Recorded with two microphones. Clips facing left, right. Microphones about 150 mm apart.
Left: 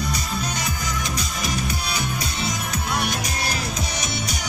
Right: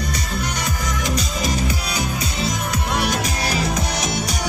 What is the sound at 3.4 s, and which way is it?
Music, 80° right.